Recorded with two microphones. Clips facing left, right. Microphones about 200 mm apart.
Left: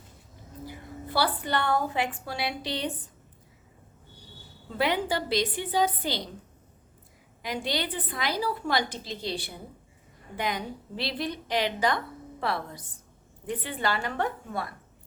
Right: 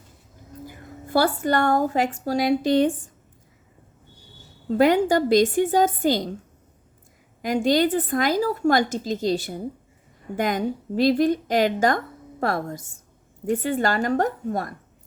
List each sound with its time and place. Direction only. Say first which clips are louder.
0.6 s a woman's voice: even; 45° right (ahead or behind)
4.7 s a woman's voice: right 10 dB; 45° right (ahead or behind)
7.4 s a woman's voice: right 11 dB; 45° right (ahead or behind)